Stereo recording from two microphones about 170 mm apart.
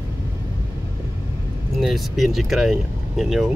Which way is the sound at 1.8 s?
Centre (ahead or behind).